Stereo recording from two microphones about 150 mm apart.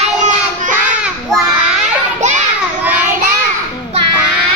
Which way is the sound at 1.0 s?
5° right (ahead or behind).